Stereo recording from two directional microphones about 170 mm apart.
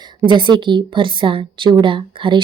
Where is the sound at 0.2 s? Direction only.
30° right (ahead or behind).